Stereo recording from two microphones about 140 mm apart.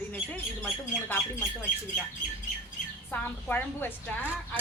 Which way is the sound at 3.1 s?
15° left (ahead or behind).